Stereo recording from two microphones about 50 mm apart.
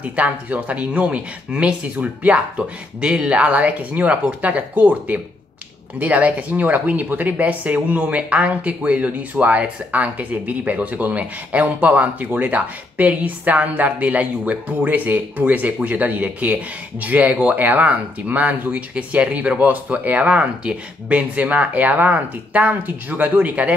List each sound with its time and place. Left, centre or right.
0.0 s speech: right